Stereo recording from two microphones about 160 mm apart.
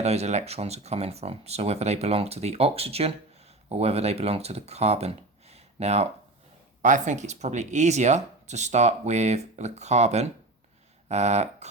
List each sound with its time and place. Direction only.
0.0 s speech: 40° right (ahead or behind)